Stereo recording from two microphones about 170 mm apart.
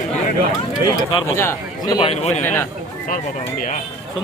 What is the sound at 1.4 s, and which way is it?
Speech, 15° left (ahead or behind).